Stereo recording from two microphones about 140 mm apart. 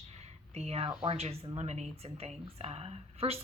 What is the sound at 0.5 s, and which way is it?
Speech, 45° right (ahead or behind).